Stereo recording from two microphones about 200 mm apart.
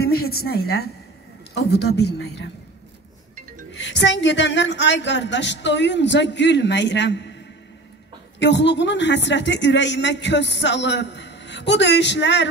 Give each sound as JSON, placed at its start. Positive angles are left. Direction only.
{"t": 0.0, "sound": "a woman's voice", "side_deg": 50}
{"t": 3.7, "sound": "speech", "side_deg": 60}
{"t": 8.4, "sound": "speech", "side_deg": 60}